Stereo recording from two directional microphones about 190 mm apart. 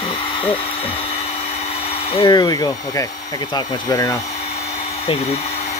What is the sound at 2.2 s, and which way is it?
Speech, 20° left (ahead or behind).